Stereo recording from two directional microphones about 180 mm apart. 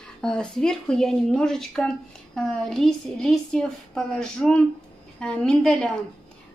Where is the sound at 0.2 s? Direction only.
5° left (ahead or behind).